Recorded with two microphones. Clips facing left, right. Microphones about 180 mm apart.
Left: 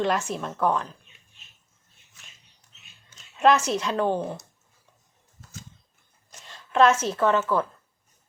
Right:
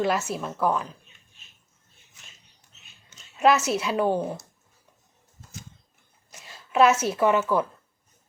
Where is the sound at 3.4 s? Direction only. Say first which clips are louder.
Even; 5° right (ahead or behind).